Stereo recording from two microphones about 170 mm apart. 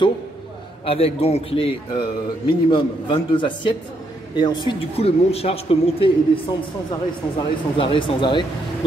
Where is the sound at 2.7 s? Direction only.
30° left (ahead or behind).